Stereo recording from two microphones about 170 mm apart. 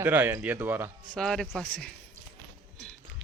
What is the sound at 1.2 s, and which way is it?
Speech, 5° left (ahead or behind).